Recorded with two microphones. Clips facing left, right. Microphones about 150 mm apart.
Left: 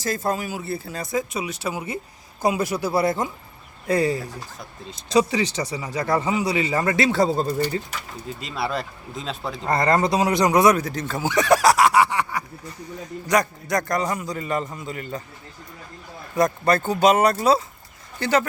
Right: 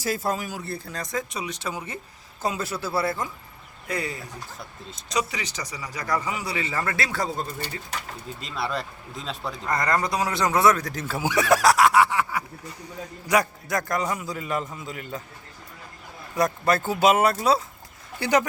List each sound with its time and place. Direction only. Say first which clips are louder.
0.0 s speech: left 2 dB; 5° right (ahead or behind); by 3.2 s 20° left (ahead or behind)
3.8 s speech: left 10 dB; 30° left (ahead or behind)
5.3 s speech: left 10 dB; 30° left (ahead or behind)
8.4 s a man's voice: left 3 dB; centre (ahead or behind)
9.6 s speech: left 5 dB; 30° left (ahead or behind)
10.8 s a man's voice: left 2 dB; 5° right (ahead or behind)
16.3 s a man's voice: left 3 dB; centre (ahead or behind)
18.2 s speech: left 1 dB; 15° right (ahead or behind)